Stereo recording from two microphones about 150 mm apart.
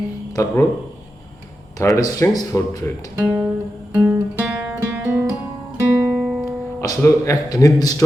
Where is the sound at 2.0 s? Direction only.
20° left (ahead or behind).